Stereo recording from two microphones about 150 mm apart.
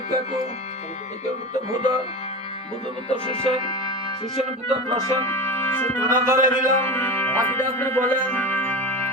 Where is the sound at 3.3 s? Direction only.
25° left (ahead or behind).